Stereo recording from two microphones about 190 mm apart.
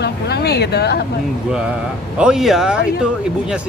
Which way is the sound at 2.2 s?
5° right (ahead or behind).